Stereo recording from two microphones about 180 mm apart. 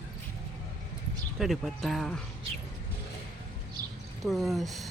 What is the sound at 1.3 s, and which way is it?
Speech, centre (ahead or behind).